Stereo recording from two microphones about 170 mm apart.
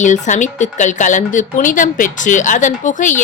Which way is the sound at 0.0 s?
45° left (ahead or behind).